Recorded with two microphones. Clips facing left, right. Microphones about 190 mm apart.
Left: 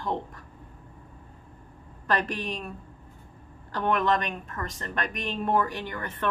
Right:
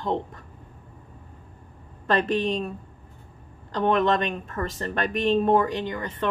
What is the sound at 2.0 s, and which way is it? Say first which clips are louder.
Speech: right 6 dB; 25° right (ahead or behind).